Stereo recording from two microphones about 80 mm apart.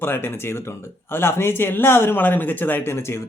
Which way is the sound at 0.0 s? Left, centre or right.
Left.